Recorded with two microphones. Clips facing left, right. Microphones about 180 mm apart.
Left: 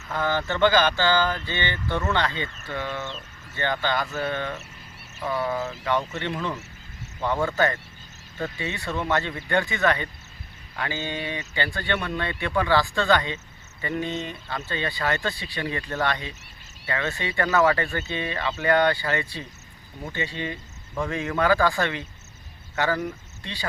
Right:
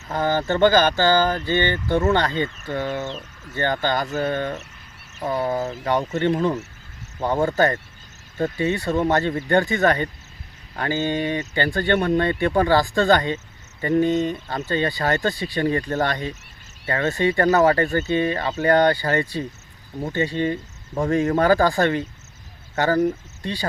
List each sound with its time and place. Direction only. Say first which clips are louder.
0.1 s speech: right 4 dB; 40° right (ahead or behind)